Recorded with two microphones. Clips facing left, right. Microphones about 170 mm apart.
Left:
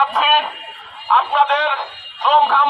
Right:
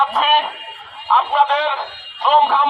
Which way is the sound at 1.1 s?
Centre (ahead or behind).